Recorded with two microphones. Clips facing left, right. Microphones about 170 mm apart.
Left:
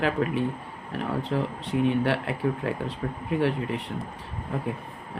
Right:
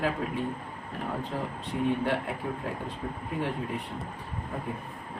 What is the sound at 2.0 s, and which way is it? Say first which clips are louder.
Speech: left 4 dB; 80° left.